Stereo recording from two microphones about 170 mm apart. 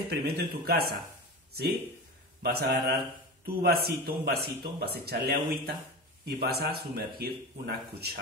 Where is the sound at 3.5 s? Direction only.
60° right (ahead or behind).